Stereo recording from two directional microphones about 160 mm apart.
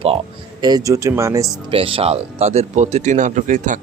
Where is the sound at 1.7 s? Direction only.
35° right (ahead or behind).